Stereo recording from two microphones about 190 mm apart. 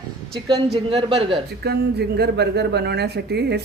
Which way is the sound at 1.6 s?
60° right (ahead or behind).